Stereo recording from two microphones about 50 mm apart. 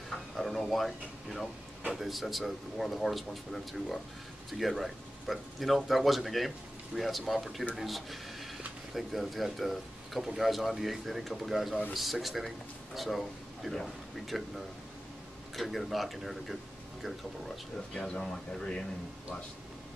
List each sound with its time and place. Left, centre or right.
0.1 s speech: centre
15.5 s speech: centre
17.9 s speech: centre